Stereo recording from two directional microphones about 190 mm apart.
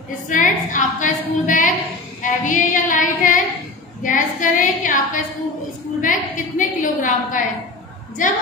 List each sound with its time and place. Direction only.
0.3 s a woman's voice: 40° left (ahead or behind)
2.4 s female singing: 40° left (ahead or behind)
4.0 s a woman's voice: 45° left (ahead or behind)